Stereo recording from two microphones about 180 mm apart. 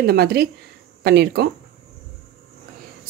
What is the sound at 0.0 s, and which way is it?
Speech, 60° right (ahead or behind).